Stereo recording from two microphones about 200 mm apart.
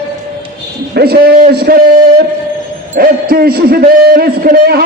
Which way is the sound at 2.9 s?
45° right (ahead or behind).